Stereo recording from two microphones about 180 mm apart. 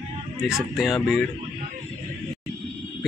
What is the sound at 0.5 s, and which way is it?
Speech, centre (ahead or behind).